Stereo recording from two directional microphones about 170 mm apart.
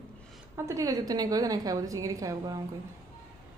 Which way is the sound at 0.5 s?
20° right (ahead or behind).